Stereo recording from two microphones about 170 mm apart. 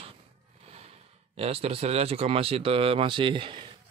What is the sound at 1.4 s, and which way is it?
Speech, 35° right (ahead or behind).